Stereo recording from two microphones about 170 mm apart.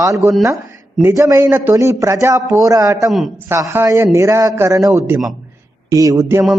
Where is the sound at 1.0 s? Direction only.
15° right (ahead or behind).